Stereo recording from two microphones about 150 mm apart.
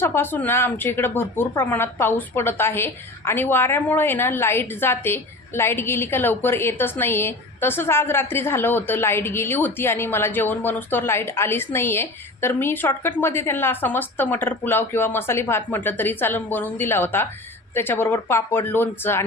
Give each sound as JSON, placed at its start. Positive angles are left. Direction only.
{"t": 0.0, "sound": "a woman's voice", "side_deg": 15}